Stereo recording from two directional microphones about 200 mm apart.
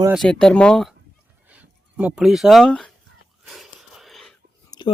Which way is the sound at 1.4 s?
10° right (ahead or behind).